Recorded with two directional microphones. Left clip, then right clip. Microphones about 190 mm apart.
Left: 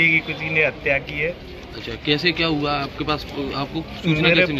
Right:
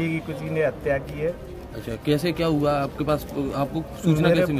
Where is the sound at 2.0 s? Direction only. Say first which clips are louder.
Left 4 dB; 75° right (ahead or behind).